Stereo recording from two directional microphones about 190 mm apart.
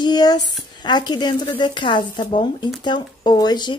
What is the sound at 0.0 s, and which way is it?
Speech, 20° left (ahead or behind).